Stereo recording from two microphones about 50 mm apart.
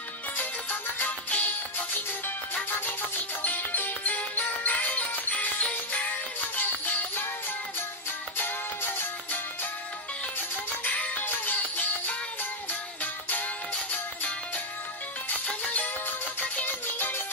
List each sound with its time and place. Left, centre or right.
0.4 s music: left
3.4 s music: left
10.8 s music: left
15.2 s music: left
16.1 s music: left